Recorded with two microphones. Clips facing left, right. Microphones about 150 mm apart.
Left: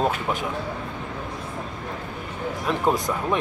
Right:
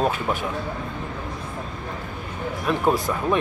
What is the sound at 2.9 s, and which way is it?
Speech, 20° left (ahead or behind).